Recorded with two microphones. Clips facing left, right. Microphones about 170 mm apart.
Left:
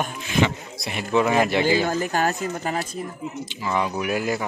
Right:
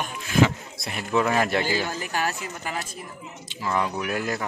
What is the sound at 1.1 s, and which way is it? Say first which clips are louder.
Speech: left 3 dB; centre (ahead or behind).